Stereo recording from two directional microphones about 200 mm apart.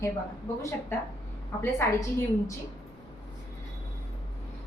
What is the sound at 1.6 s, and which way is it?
Speech, 15° left (ahead or behind).